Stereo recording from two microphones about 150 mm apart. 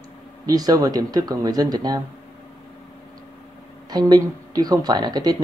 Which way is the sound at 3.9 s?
25° right (ahead or behind).